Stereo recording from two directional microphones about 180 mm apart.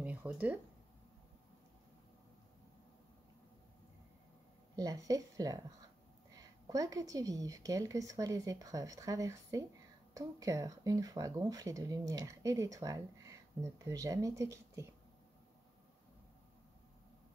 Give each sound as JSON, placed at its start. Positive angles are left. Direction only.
{"t": 0.0, "sound": "a sound", "side_deg": -10}
{"t": 4.7, "sound": "speech", "side_deg": -20}
{"t": 6.7, "sound": "speech", "side_deg": -20}